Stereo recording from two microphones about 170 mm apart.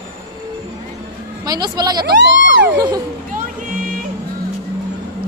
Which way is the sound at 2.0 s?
90° right.